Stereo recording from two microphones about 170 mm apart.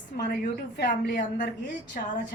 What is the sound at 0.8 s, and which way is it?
Speech, 50° left (ahead or behind).